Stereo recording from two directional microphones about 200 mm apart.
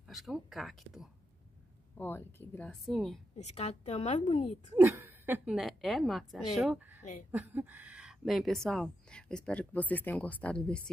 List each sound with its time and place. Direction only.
0.1 s speech: centre (ahead or behind)
2.0 s speech: 10° left (ahead or behind)
3.3 s a woman's voice: 35° left (ahead or behind)
4.7 s speech: 10° right (ahead or behind)
7.0 s a woman's voice: 35° left (ahead or behind)
7.2 s speech: 10° right (ahead or behind); by 10.8 s 5° left (ahead or behind)